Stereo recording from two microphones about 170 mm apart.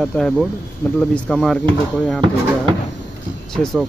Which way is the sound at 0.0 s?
5° left (ahead or behind).